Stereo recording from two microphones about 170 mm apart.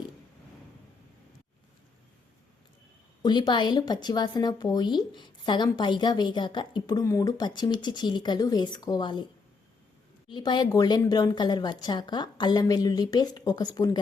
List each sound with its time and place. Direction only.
3.2 s a woman's voice: 25° left (ahead or behind)
10.2 s a woman's voice: 25° left (ahead or behind)